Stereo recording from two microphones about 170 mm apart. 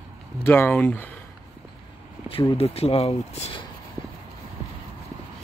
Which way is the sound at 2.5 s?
35° left (ahead or behind).